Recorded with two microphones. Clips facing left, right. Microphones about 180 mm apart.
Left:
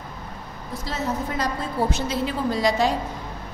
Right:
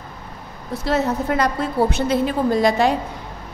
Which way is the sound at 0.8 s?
65° right (ahead or behind).